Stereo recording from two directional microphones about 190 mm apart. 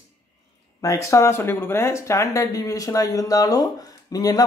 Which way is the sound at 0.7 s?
15° left (ahead or behind).